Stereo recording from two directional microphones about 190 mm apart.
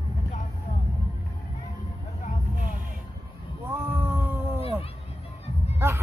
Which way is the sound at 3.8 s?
10° right (ahead or behind).